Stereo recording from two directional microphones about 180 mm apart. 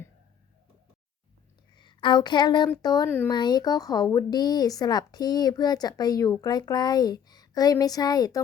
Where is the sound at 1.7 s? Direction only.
25° left (ahead or behind).